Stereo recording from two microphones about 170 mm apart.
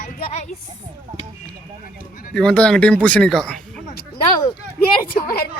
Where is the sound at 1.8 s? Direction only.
55° left (ahead or behind).